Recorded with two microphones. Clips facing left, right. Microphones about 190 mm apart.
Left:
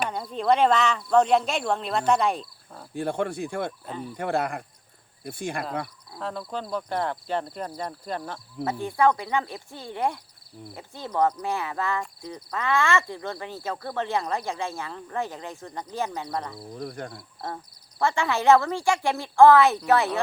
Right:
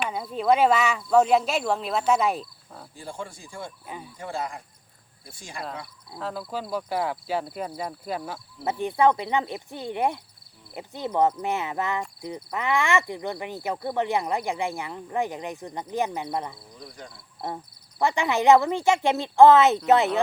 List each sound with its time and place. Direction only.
0.1 s speech: 5° right (ahead or behind)
2.9 s speech: 65° left (ahead or behind)
6.1 s speech: centre (ahead or behind)
8.6 s speech: 20° right (ahead or behind)
16.6 s speech: 55° left (ahead or behind)
18.0 s speech: 15° right (ahead or behind)